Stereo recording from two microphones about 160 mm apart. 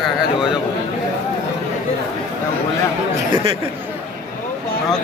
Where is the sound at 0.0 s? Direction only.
5° right (ahead or behind).